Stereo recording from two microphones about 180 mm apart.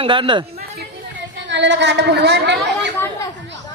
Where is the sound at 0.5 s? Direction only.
60° right (ahead or behind).